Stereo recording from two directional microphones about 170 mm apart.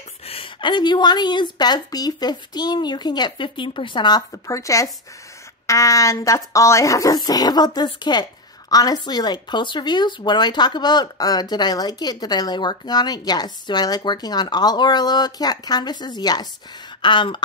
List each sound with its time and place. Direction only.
0.3 s a woman's voice: 30° left (ahead or behind)